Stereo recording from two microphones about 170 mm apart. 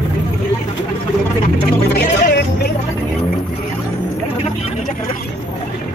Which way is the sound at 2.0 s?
70° left (ahead or behind).